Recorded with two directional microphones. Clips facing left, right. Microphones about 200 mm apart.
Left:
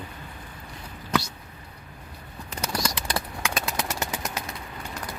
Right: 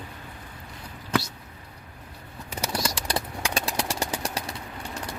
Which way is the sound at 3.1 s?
35° right (ahead or behind).